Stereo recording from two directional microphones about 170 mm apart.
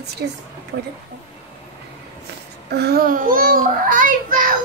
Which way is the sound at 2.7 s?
70° right (ahead or behind).